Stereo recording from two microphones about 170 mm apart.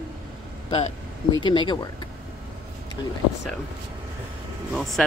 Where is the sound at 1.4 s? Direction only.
30° left (ahead or behind).